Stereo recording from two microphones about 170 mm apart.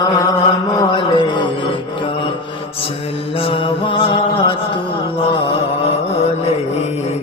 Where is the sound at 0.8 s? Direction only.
30° left (ahead or behind).